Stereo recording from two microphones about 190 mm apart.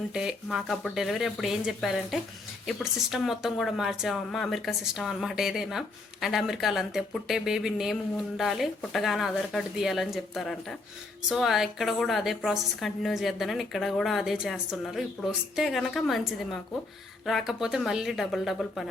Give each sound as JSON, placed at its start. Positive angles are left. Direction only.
{"t": 0.1, "sound": "speech", "side_deg": -5}